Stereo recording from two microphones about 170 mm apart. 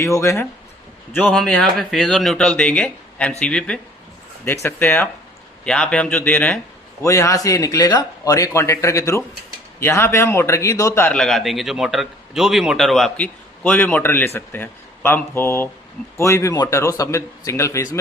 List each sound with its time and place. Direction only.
0.0 s a man's voice: 15° left (ahead or behind)
1.1 s a man's voice: 5° left (ahead or behind)